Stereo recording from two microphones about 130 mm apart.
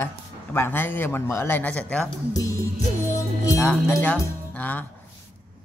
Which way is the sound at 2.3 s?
25° left (ahead or behind).